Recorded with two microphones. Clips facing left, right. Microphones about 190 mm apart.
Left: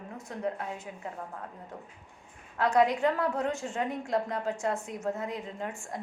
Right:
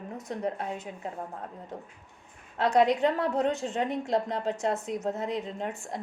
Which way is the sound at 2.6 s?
20° right (ahead or behind).